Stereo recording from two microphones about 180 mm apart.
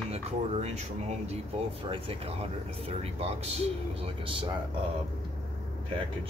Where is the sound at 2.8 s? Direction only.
35° right (ahead or behind).